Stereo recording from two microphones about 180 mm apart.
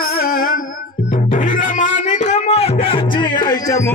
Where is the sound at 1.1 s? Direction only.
50° left (ahead or behind).